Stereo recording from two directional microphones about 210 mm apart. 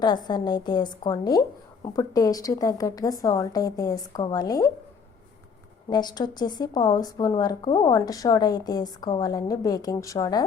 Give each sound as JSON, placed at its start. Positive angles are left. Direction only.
{"t": 0.0, "sound": "a woman's voice", "side_deg": 20}
{"t": 5.9, "sound": "speech", "side_deg": 20}